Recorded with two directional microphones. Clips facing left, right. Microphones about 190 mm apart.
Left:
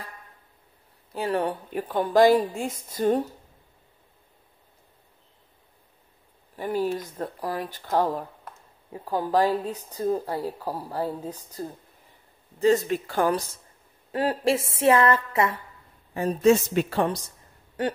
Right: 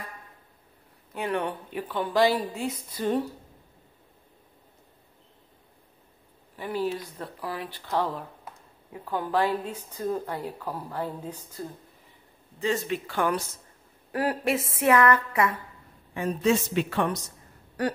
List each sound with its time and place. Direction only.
1.1 s speech: 35° left (ahead or behind)
6.5 s a woman's voice: 45° left (ahead or behind); by 15.5 s 25° left (ahead or behind)
16.1 s a woman's voice: 40° left (ahead or behind)